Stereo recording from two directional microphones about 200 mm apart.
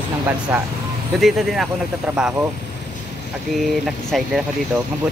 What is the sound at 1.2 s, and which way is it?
Speech, centre (ahead or behind).